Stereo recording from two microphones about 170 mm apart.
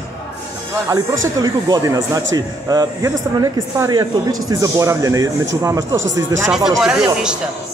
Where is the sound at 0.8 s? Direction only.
20° right (ahead or behind).